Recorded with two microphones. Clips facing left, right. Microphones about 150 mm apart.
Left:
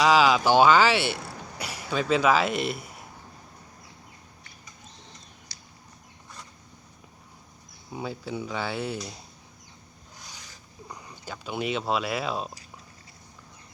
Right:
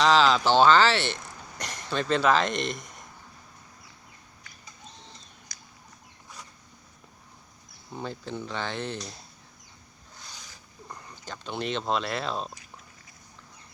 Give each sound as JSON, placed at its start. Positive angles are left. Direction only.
{"t": 0.0, "sound": "speech", "side_deg": 10}
{"t": 5.5, "sound": "a sound", "side_deg": 30}
{"t": 7.9, "sound": "speech", "side_deg": 10}
{"t": 10.2, "sound": "zipper", "side_deg": 10}
{"t": 10.8, "sound": "speech", "side_deg": 10}